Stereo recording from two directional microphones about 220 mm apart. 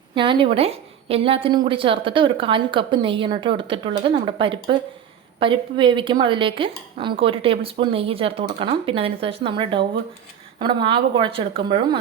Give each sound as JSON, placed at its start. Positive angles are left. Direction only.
{"t": 0.1, "sound": "a woman's voice", "side_deg": -20}